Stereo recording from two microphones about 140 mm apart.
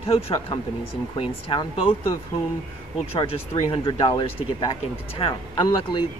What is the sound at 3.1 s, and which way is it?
Speech, 45° left (ahead or behind).